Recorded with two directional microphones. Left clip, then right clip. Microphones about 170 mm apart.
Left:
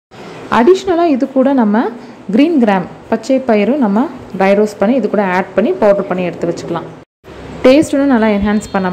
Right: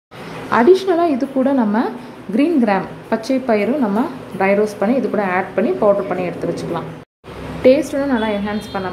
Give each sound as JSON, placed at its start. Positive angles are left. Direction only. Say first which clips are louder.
{"t": 0.5, "sound": "a woman's voice", "louder": "left 2 dB", "side_deg": 15}